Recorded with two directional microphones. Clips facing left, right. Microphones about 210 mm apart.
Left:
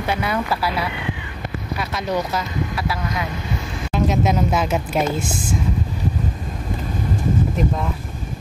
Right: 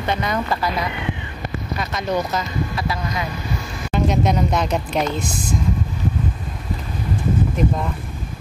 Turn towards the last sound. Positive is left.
turn(degrees=0)  # may be behind; listen again after turning